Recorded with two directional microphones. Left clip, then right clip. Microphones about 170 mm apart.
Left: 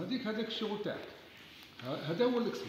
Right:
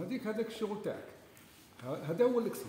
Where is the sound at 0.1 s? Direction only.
35° right (ahead or behind).